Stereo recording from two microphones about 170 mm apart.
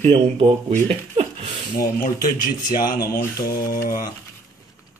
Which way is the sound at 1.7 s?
55° left (ahead or behind).